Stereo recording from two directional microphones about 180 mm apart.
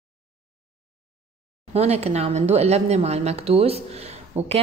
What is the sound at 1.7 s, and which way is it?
A woman's voice, 35° right (ahead or behind).